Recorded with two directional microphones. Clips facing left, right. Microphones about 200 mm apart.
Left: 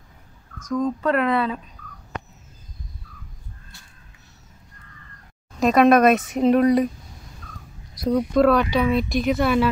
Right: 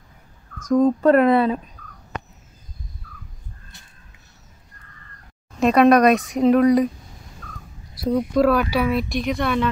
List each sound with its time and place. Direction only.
0.7 s speech: 50° right (ahead or behind)
5.6 s speech: centre (ahead or behind)
7.9 s speech: 5° right (ahead or behind)